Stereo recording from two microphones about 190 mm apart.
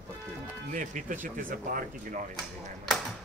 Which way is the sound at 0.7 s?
45° right (ahead or behind).